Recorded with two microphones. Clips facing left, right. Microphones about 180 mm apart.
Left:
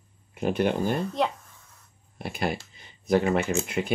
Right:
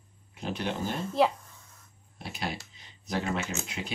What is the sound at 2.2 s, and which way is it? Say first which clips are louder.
Speech: left 7 dB; 55° left (ahead or behind).